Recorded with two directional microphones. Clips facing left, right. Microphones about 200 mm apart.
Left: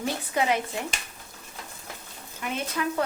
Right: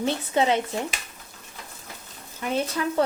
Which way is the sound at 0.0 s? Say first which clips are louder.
Right 4 dB; 25° right (ahead or behind).